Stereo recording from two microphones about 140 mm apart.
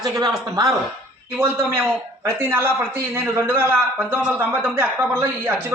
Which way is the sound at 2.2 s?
15° right (ahead or behind).